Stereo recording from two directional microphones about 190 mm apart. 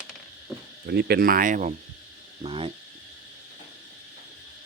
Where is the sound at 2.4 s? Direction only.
30° right (ahead or behind).